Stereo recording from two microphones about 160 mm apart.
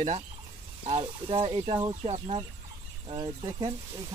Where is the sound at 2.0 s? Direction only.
40° right (ahead or behind).